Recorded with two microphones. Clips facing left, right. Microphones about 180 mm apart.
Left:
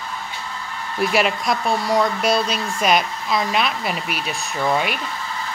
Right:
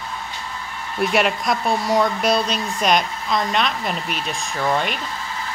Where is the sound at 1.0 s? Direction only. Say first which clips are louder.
Even; centre (ahead or behind).